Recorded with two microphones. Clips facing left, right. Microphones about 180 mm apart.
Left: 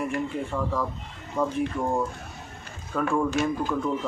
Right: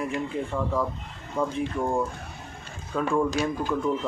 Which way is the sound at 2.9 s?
Centre (ahead or behind).